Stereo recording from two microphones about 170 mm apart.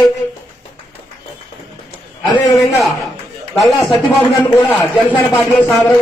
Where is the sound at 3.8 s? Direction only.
25° left (ahead or behind).